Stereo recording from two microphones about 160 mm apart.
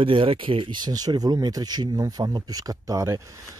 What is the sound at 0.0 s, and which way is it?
Speech, 35° right (ahead or behind).